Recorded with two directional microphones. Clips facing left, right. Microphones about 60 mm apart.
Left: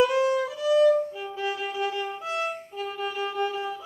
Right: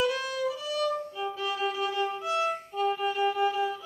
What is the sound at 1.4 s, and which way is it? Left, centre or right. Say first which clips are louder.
Violin: left 2 dB; left.